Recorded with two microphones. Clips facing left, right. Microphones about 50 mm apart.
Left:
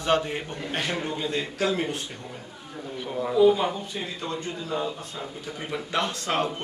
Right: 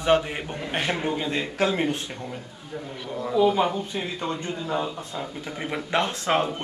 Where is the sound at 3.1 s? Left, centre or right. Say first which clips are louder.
Left 1 dB; centre.